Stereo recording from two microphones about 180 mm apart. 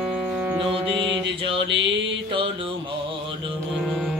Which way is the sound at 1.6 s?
75° right (ahead or behind).